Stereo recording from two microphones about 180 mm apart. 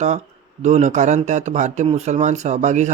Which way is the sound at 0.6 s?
40° right (ahead or behind).